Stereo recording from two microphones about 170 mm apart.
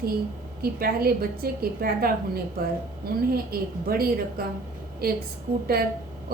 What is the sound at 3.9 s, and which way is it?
Speech, 60° right (ahead or behind).